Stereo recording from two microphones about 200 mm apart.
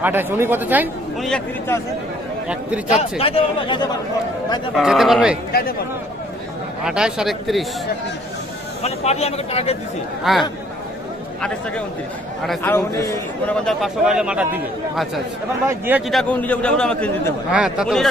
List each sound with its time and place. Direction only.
0.0 s speech: 10° right (ahead or behind)
1.3 s speech: 10° left (ahead or behind)
2.5 s speech: 5° right (ahead or behind)
2.9 s speech: 30° left (ahead or behind)
4.8 s a man's voice: centre (ahead or behind)
6.8 s a man's voice: 5° right (ahead or behind)
8.8 s a man's voice: 30° left (ahead or behind)
10.3 s a man's voice: centre (ahead or behind)
12.4 s a man's voice: centre (ahead or behind)
12.7 s speech: 15° left (ahead or behind)
13.7 s a man's voice: centre (ahead or behind)